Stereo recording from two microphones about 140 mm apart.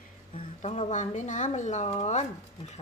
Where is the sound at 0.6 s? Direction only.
50° left (ahead or behind).